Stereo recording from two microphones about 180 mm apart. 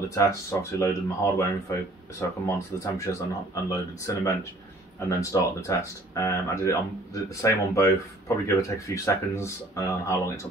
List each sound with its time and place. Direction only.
0.1 s speech: 15° left (ahead or behind)